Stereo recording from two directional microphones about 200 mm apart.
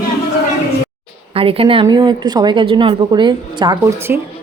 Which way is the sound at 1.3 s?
30° right (ahead or behind).